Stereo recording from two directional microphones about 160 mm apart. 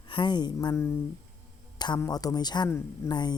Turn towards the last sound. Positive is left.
turn(degrees=25)  # may be behind; listen again after turning